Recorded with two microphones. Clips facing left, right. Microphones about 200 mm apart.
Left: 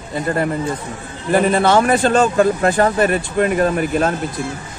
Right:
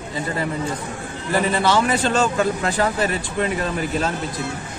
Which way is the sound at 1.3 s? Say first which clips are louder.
Left 5 dB; 55° left (ahead or behind).